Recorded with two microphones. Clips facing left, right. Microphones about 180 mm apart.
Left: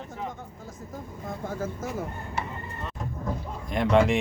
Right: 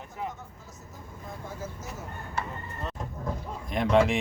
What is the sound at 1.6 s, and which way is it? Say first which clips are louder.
Speech: left 8 dB; 55° left (ahead or behind).